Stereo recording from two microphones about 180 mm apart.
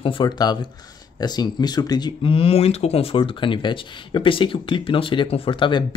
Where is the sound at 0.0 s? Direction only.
25° left (ahead or behind).